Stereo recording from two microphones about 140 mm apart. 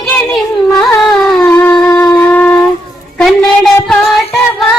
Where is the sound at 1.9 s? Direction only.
15° left (ahead or behind).